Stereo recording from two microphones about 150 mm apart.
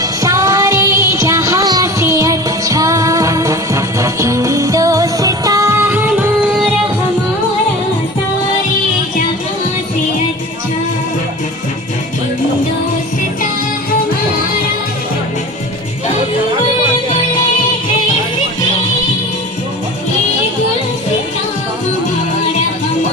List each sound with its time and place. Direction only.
0.0 s music: 25° right (ahead or behind)